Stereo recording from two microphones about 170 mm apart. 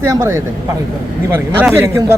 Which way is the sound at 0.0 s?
15° right (ahead or behind).